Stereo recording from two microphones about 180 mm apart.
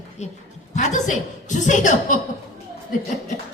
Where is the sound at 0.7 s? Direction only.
40° left (ahead or behind).